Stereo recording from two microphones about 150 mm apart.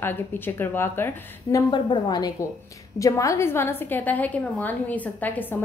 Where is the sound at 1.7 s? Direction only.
30° left (ahead or behind).